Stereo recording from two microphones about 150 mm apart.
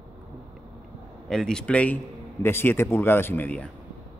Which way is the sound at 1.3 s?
5° left (ahead or behind).